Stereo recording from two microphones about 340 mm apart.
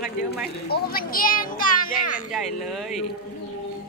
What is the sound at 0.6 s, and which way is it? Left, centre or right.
Speech, left.